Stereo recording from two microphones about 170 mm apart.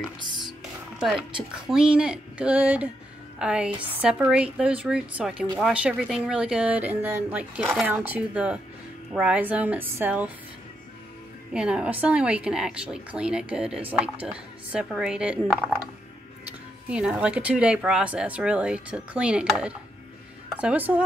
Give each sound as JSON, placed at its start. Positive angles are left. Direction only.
{"t": 0.9, "sound": "a woman's voice", "side_deg": -5}
{"t": 11.5, "sound": "a woman's voice", "side_deg": -5}
{"t": 16.8, "sound": "speech", "side_deg": -5}